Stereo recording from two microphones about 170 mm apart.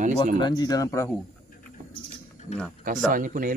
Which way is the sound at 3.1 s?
55° right (ahead or behind).